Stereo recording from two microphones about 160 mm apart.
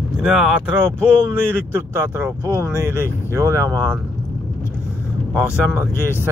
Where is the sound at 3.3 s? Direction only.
20° right (ahead or behind).